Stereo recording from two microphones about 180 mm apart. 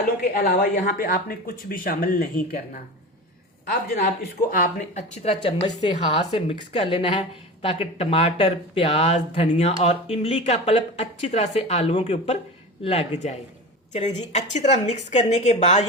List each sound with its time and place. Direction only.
0.0 s speech: 50° left (ahead or behind)